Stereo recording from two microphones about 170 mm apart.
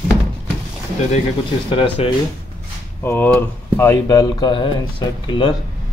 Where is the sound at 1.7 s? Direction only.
30° left (ahead or behind).